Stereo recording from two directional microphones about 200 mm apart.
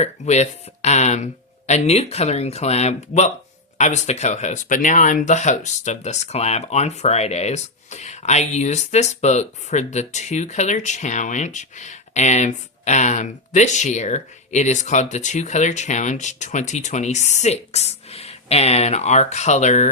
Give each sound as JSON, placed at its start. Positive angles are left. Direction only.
{"t": 0.0, "sound": "speech", "side_deg": 35}